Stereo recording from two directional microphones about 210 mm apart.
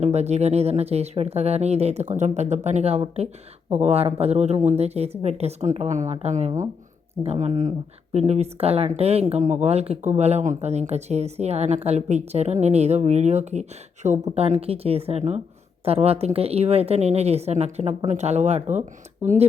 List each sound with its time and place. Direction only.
0.0 s speech: 30° right (ahead or behind)